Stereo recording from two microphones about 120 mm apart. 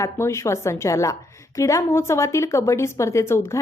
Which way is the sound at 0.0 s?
25° left (ahead or behind).